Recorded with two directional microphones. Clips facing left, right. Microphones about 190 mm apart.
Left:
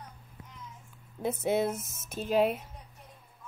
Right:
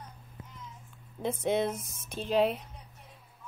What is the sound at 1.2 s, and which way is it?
Speech, 5° left (ahead or behind).